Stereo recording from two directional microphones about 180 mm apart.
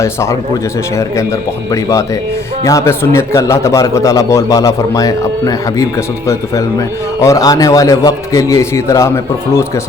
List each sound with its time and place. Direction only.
0.0 s a man's voice: 15° left (ahead or behind)
1.7 s a man's voice: 20° left (ahead or behind)